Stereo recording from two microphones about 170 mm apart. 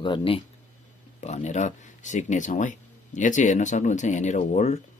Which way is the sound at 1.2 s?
40° left (ahead or behind).